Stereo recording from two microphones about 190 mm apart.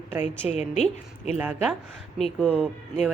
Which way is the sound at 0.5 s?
35° left (ahead or behind).